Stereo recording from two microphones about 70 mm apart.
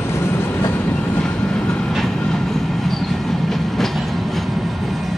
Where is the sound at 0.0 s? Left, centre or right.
Left.